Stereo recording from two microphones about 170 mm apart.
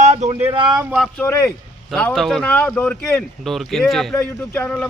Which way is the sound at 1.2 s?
15° left (ahead or behind).